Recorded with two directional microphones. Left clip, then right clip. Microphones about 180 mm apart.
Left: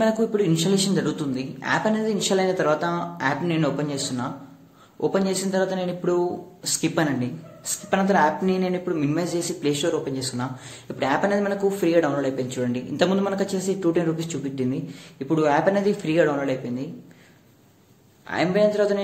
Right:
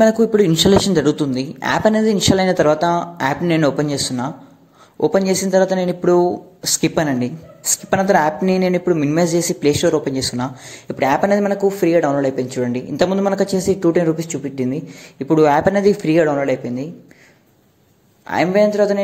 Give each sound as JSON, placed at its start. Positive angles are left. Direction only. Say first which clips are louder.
{"t": 0.0, "sound": "speech", "louder": "right 8 dB", "side_deg": -40}
{"t": 18.2, "sound": "speech", "louder": "right 6 dB", "side_deg": -35}